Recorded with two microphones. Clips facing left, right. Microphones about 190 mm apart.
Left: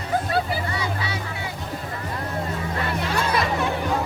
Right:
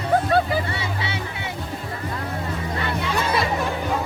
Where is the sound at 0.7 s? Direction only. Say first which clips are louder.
Even; 25° right (ahead or behind).